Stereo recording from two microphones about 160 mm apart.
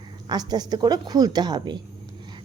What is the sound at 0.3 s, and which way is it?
A woman's voice, 25° right (ahead or behind).